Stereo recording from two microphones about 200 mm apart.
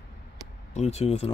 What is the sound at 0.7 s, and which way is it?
Speech, 30° left (ahead or behind).